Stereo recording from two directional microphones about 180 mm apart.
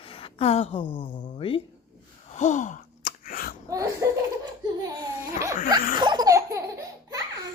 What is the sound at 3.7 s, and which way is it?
Laughter, 20° right (ahead or behind).